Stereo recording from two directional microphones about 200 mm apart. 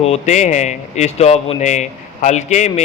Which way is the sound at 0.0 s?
35° left (ahead or behind).